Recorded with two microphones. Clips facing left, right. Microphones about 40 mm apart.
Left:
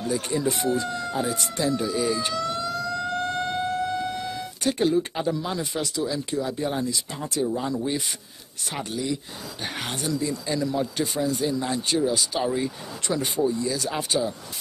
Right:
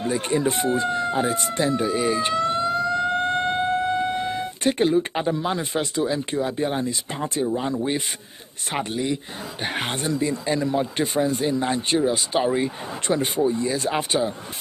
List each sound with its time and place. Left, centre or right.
0.0 s speech: right